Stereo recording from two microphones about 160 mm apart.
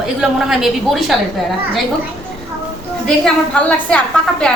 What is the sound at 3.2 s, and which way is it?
A woman's voice, 5° left (ahead or behind).